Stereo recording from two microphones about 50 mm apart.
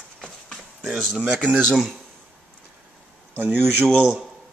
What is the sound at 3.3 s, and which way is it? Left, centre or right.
Speech, right.